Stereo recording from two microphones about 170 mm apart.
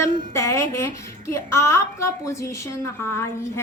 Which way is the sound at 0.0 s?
15° left (ahead or behind).